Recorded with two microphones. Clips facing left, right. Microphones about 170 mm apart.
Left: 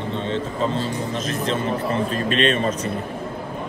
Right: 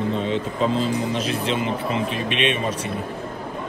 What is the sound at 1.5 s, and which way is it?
Speech, 90° right.